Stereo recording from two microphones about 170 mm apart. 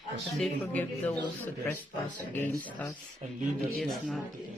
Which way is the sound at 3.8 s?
Centre (ahead or behind).